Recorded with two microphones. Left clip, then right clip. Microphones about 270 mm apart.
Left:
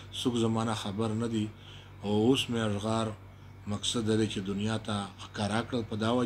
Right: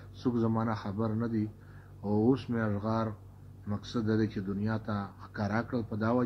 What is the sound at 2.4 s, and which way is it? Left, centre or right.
A man's voice, left.